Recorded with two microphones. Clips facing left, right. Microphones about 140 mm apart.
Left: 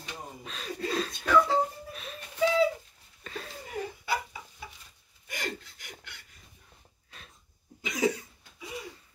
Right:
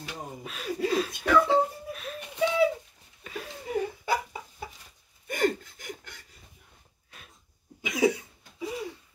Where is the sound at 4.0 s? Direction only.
45° right (ahead or behind).